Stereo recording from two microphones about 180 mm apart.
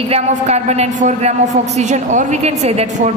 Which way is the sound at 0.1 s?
35° right (ahead or behind).